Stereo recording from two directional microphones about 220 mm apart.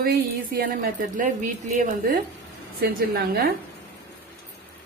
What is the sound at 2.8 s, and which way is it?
Speech, 45° right (ahead or behind).